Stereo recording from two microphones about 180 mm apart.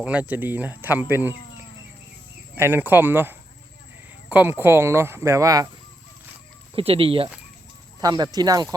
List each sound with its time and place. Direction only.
0.0 s speech: 5° right (ahead or behind)
2.6 s speech: 10° right (ahead or behind)
6.7 s speech: 30° right (ahead or behind)